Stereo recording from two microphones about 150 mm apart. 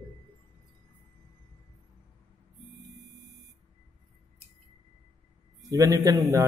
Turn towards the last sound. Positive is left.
turn(degrees=-20)  # may be behind; listen again after turning